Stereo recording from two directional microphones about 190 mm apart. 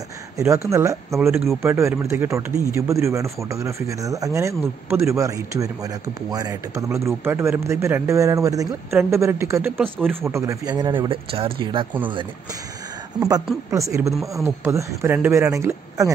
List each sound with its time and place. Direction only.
0.7 s a man's voice: 15° right (ahead or behind)
9.8 s speech: centre (ahead or behind)
10.2 s speech: 15° right (ahead or behind)
13.7 s a man's voice: 15° right (ahead or behind)